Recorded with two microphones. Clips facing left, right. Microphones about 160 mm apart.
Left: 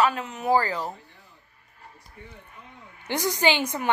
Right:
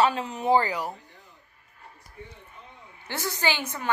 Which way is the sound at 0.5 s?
15° right (ahead or behind).